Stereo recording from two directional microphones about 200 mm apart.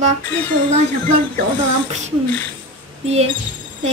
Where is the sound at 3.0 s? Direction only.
30° right (ahead or behind).